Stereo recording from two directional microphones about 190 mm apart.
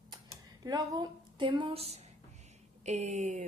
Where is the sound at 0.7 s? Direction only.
20° right (ahead or behind).